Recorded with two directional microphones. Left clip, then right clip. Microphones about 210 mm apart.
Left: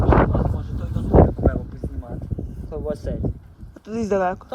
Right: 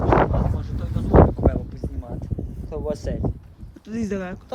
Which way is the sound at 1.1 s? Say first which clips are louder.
Even; centre (ahead or behind).